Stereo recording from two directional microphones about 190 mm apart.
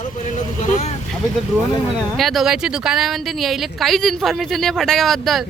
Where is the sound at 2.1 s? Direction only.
Centre (ahead or behind).